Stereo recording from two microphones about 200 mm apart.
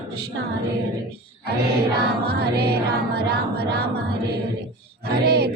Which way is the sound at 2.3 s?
50° right (ahead or behind).